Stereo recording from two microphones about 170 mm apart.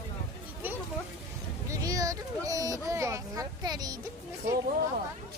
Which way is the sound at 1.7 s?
20° right (ahead or behind).